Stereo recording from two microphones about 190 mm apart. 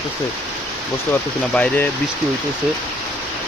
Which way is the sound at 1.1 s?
10° left (ahead or behind).